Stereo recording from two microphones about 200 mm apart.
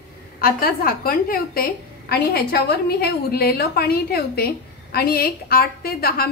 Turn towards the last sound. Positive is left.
turn(degrees=50)  # may be behind; listen again after turning